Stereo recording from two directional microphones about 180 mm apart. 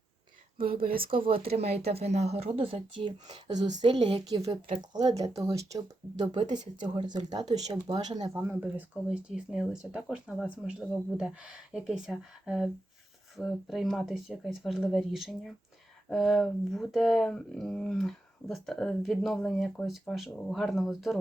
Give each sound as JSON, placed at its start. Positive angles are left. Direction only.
{"t": 0.8, "sound": "speech", "side_deg": -55}
{"t": 1.1, "sound": "speech", "side_deg": -30}
{"t": 8.4, "sound": "speech", "side_deg": -10}